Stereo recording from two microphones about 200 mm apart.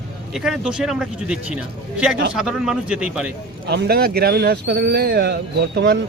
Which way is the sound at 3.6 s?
55° right (ahead or behind).